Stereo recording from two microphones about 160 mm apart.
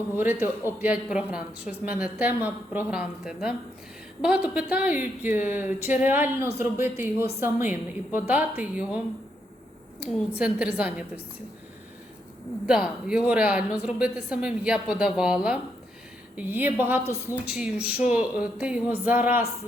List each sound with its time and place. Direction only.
0.2 s a woman's voice: 10° right (ahead or behind)
10.0 s a woman's voice: 5° right (ahead or behind)
12.6 s a woman's voice: 5° right (ahead or behind)